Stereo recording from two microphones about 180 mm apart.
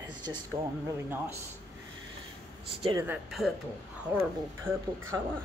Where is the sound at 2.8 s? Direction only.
20° right (ahead or behind).